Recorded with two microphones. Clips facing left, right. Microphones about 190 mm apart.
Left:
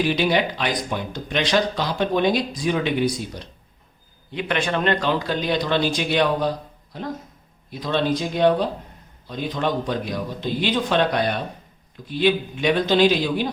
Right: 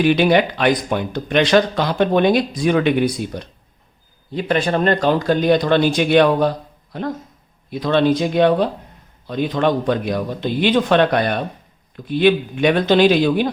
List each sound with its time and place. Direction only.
0.0 s speech: 60° right (ahead or behind)
4.3 s speech: 35° right (ahead or behind); by 6.5 s 60° right (ahead or behind)
7.7 s speech: 65° right (ahead or behind)